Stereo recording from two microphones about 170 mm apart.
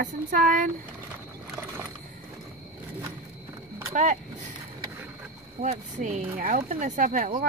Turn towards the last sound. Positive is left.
turn(degrees=-55)  # may be behind; listen again after turning